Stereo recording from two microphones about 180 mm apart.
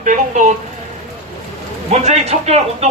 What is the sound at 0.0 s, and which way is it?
Speech, 45° right (ahead or behind).